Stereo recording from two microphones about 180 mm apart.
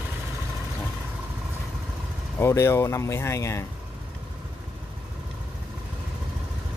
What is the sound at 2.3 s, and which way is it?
Speech, 15° left (ahead or behind).